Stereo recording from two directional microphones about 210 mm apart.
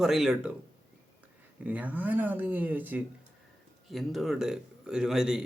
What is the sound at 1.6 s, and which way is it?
A man's voice, 5° right (ahead or behind).